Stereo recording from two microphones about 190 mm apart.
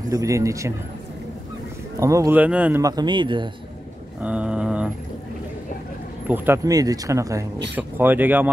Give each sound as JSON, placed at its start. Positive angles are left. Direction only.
{"t": 0.1, "sound": "speech", "side_deg": -15}
{"t": 2.0, "sound": "speech", "side_deg": -15}
{"t": 2.8, "sound": "speech", "side_deg": -20}
{"t": 4.2, "sound": "a sound", "side_deg": -5}
{"t": 6.2, "sound": "speech", "side_deg": -10}